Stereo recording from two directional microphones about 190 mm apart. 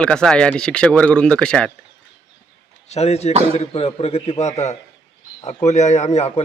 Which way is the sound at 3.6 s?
30° left (ahead or behind).